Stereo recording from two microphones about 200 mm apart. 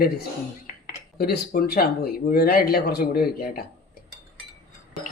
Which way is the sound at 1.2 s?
50° left (ahead or behind).